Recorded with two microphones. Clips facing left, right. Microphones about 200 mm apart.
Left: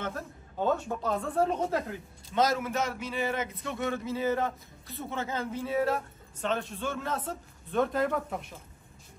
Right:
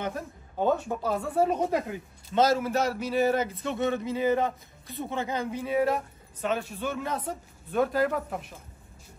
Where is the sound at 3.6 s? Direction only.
20° right (ahead or behind); by 8.5 s centre (ahead or behind).